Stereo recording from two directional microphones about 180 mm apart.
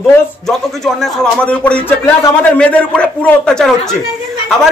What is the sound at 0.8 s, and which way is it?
A man's voice, centre (ahead or behind).